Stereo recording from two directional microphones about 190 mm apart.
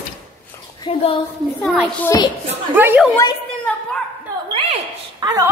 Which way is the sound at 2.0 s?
15° left (ahead or behind).